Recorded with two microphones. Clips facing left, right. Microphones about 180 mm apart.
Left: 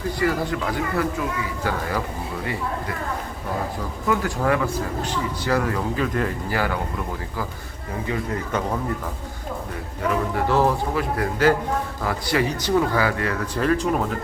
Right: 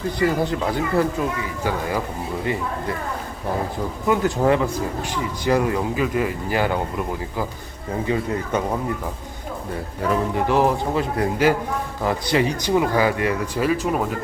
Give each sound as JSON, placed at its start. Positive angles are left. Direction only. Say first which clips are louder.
{"t": 0.2, "sound": "speech", "louder": "right 3 dB", "side_deg": -25}
{"t": 4.0, "sound": "speech", "louder": "right 4 dB", "side_deg": -20}
{"t": 6.5, "sound": "speech", "louder": "right 5 dB", "side_deg": -20}
{"t": 8.0, "sound": "speech", "louder": "right 3 dB", "side_deg": -25}
{"t": 10.3, "sound": "speech", "louder": "even", "side_deg": -20}